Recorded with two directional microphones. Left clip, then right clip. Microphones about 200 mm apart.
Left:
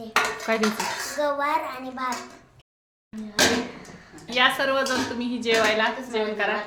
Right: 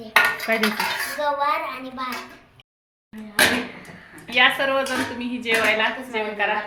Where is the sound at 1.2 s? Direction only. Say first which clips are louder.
Right 1 dB; 40° left (ahead or behind).